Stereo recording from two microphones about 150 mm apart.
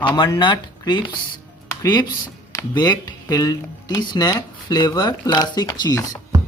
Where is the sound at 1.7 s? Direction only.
30° left (ahead or behind).